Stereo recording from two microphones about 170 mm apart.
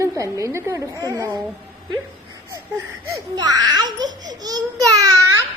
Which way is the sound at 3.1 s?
25° right (ahead or behind).